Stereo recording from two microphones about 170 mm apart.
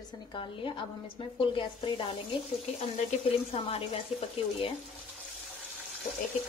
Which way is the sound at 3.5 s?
35° left (ahead or behind).